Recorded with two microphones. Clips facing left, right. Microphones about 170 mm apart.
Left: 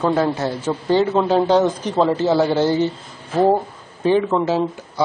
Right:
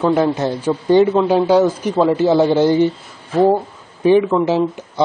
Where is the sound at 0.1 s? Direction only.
20° right (ahead or behind).